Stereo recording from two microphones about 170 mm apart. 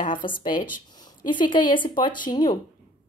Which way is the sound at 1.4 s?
25° left (ahead or behind).